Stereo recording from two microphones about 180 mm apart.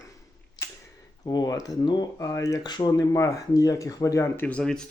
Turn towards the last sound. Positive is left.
turn(degrees=5)  # may be behind; listen again after turning